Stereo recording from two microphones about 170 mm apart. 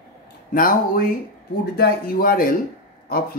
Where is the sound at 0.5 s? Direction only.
55° left (ahead or behind).